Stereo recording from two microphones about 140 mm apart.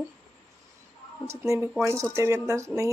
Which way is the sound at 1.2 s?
20° right (ahead or behind).